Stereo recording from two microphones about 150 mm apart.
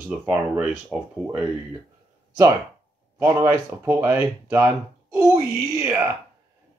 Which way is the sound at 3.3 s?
20° right (ahead or behind).